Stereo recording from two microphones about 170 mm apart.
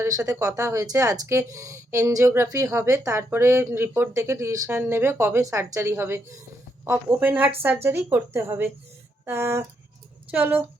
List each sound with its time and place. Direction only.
0.0 s speech: 15° right (ahead or behind)